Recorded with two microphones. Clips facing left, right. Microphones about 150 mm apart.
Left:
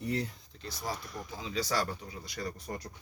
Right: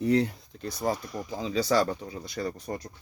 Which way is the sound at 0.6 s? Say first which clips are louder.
Right 9 dB; 55° right (ahead or behind).